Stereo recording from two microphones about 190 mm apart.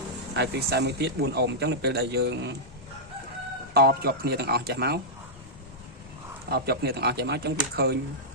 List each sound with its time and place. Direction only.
0.3 s speech: 60° right (ahead or behind)
3.8 s speech: 55° right (ahead or behind)
6.5 s speech: 55° right (ahead or behind)